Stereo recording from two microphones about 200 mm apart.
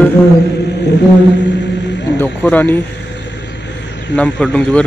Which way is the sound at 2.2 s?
10° left (ahead or behind).